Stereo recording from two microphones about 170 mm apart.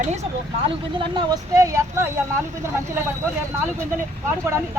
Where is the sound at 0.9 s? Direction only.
25° right (ahead or behind).